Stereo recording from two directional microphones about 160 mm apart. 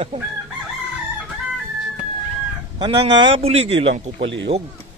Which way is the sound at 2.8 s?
30° right (ahead or behind).